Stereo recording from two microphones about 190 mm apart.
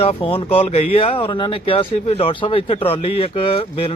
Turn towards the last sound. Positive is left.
turn(degrees=30)  # may be behind; listen again after turning